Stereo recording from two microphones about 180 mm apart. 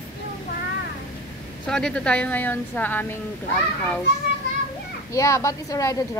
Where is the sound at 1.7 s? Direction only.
5° left (ahead or behind).